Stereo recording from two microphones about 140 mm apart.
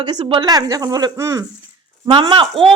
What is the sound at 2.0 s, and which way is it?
Speech, 35° right (ahead or behind).